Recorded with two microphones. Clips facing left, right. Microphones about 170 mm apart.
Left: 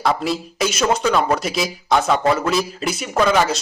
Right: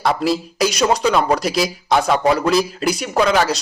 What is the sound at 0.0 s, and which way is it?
Speech, centre (ahead or behind).